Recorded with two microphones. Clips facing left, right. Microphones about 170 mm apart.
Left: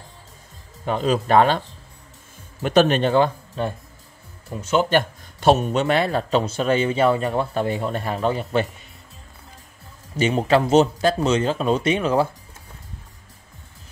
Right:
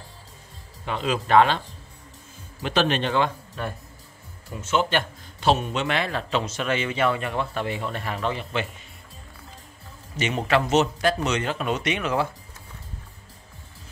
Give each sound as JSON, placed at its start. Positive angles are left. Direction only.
{"t": 0.8, "sound": "a man's voice", "side_deg": 40}
{"t": 2.6, "sound": "speech", "side_deg": 45}
{"t": 3.6, "sound": "a man's voice", "side_deg": 25}
{"t": 10.1, "sound": "a man's voice", "side_deg": 30}